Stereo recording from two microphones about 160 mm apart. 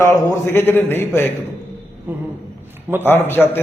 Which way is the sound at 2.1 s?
10° right (ahead or behind).